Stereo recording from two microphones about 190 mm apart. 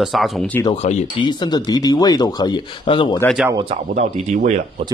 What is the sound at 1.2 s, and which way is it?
Speech, 25° left (ahead or behind).